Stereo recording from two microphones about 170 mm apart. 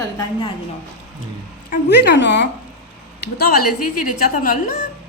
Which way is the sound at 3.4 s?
60° left (ahead or behind).